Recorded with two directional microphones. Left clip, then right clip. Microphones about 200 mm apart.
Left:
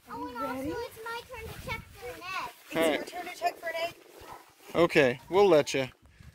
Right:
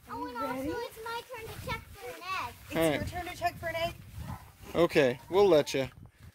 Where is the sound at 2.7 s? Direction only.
5° left (ahead or behind).